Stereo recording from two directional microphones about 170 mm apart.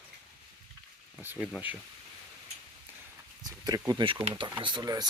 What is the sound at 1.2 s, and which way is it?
Speech, 10° right (ahead or behind).